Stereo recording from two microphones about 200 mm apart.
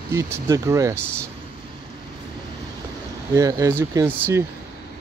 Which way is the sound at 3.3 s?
15° right (ahead or behind).